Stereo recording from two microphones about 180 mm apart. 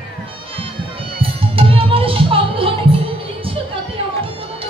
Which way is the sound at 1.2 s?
30° right (ahead or behind).